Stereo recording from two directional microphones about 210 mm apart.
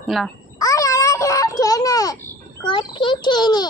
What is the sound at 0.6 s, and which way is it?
Babbling, 15° left (ahead or behind).